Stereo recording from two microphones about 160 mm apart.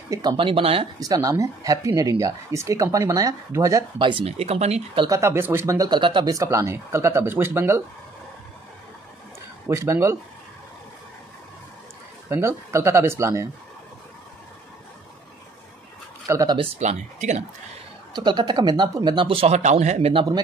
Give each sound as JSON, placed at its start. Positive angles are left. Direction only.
{"t": 0.1, "sound": "speech", "side_deg": -25}
{"t": 0.9, "sound": "speech", "side_deg": -20}
{"t": 4.0, "sound": "speech", "side_deg": -35}
{"t": 5.0, "sound": "speech", "side_deg": -20}
{"t": 9.7, "sound": "speech", "side_deg": -15}
{"t": 12.3, "sound": "speech", "side_deg": -15}
{"t": 16.3, "sound": "speech", "side_deg": -20}
{"t": 16.5, "sound": "speech", "side_deg": -45}
{"t": 18.1, "sound": "speech", "side_deg": -25}